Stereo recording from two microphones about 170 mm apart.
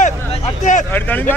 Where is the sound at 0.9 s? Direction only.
10° left (ahead or behind).